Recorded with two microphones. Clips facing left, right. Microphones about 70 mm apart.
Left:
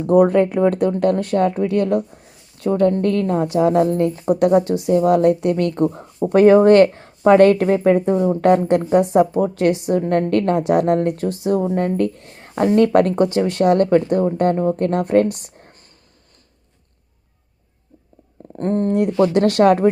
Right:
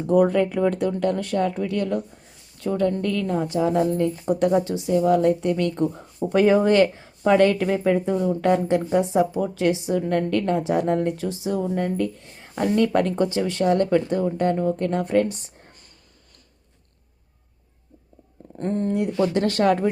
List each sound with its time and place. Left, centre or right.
0.0 s speech: left
18.5 s speech: left
18.9 s speech: left
19.5 s speech: left